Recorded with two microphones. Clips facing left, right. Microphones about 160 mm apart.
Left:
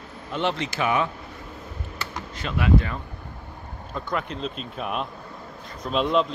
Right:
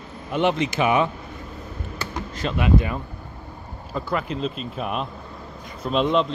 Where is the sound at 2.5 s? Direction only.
15° right (ahead or behind).